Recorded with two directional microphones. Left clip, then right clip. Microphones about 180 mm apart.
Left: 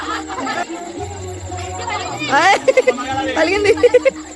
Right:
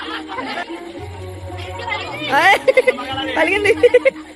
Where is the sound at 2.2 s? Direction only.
Centre (ahead or behind).